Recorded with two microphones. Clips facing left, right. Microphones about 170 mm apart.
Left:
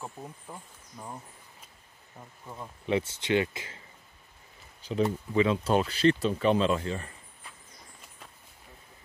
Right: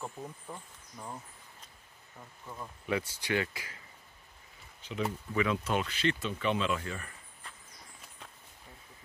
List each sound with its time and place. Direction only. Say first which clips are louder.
0.0 s speech: even; 10° left (ahead or behind); by 3.8 s 25° left (ahead or behind)
4.8 s speech: left 7 dB; 35° left (ahead or behind)